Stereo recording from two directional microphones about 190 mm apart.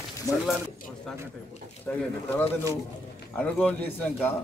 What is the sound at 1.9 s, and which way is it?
Speech, 10° left (ahead or behind).